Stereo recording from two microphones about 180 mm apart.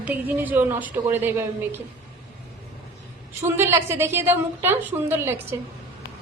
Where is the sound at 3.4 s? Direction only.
15° right (ahead or behind).